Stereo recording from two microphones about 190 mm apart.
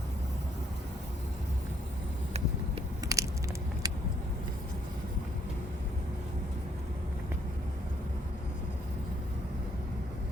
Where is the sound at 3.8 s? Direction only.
20° right (ahead or behind).